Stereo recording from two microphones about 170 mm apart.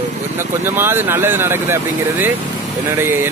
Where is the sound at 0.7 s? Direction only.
15° right (ahead or behind).